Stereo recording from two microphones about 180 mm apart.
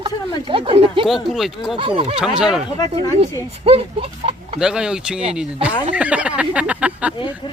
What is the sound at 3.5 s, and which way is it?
Speech, 35° right (ahead or behind).